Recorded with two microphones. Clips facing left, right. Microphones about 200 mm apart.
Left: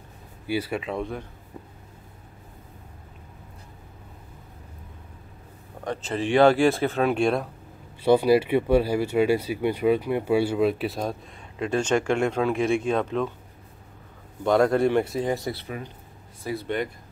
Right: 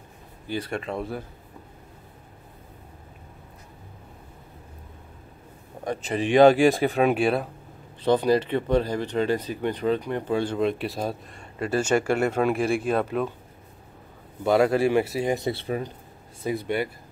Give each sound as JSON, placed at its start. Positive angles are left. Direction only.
{"t": 0.5, "sound": "speech", "side_deg": 5}
{"t": 5.9, "sound": "speech", "side_deg": -15}
{"t": 8.0, "sound": "speech", "side_deg": 10}
{"t": 14.4, "sound": "speech", "side_deg": -5}
{"t": 16.4, "sound": "speech", "side_deg": -15}